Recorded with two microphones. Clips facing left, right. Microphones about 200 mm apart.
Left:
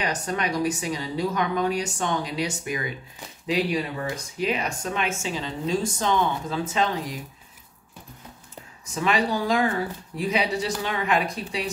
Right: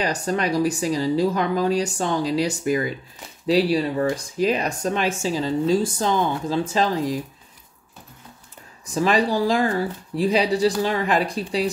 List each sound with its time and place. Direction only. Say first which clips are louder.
0.0 s speech: right 4 dB; 35° right (ahead or behind)
8.9 s speech: right 4 dB; 35° right (ahead or behind)